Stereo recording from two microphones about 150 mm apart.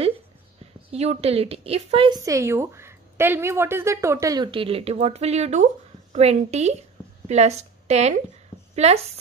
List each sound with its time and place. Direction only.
0.9 s a woman's voice: 45° right (ahead or behind)
2.2 s a woman's voice: 20° right (ahead or behind)
4.5 s a woman's voice: 35° right (ahead or behind)